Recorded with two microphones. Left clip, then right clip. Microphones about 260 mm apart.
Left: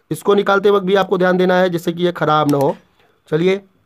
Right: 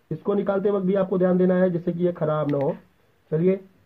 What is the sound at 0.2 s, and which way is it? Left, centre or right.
Speech, left.